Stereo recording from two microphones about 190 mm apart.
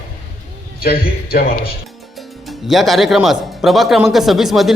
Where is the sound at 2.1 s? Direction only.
Centre (ahead or behind).